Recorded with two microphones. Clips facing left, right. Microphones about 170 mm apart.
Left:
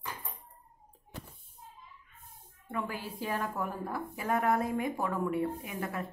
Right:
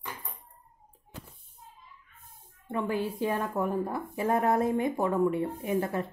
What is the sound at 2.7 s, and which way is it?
A woman's voice, 20° right (ahead or behind).